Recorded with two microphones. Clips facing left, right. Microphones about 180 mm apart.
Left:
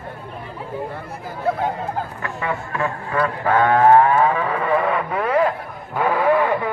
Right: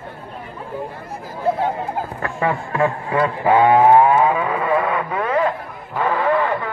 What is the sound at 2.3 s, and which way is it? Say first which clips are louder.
Speech: right 4 dB; 35° right (ahead or behind).